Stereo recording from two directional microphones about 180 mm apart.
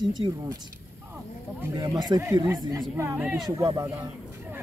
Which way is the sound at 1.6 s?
20° right (ahead or behind).